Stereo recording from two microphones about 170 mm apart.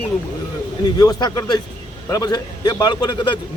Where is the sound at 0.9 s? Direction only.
20° left (ahead or behind).